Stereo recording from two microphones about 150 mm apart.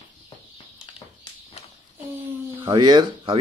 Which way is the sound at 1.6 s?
45° left (ahead or behind).